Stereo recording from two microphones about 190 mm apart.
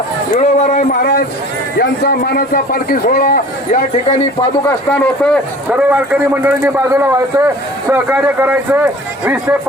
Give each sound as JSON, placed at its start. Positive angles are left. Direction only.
{"t": 0.3, "sound": "a man's voice", "side_deg": 40}
{"t": 4.9, "sound": "speech", "side_deg": 5}
{"t": 5.7, "sound": "a man's voice", "side_deg": -10}